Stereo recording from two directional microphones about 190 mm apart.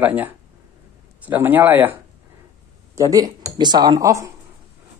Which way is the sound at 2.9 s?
20° right (ahead or behind).